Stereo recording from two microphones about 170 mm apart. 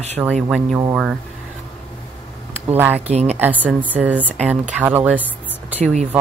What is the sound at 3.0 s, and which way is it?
Speech, 40° right (ahead or behind).